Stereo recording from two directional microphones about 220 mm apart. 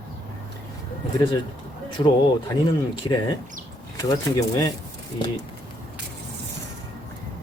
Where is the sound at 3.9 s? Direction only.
15° left (ahead or behind).